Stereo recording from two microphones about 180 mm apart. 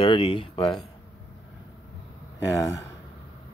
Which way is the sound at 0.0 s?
30° left (ahead or behind).